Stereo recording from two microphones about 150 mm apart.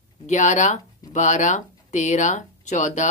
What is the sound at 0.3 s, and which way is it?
Speech, 55° left (ahead or behind).